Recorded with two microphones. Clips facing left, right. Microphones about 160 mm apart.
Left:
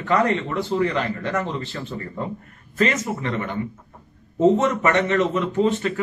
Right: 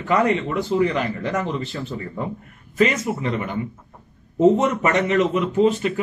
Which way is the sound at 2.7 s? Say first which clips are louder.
Right 2 dB; 10° right (ahead or behind).